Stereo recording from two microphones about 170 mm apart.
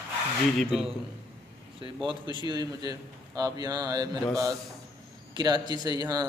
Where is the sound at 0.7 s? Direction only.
5° right (ahead or behind).